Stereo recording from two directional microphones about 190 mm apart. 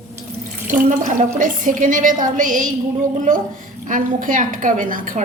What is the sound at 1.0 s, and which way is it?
A woman's voice, 45° right (ahead or behind).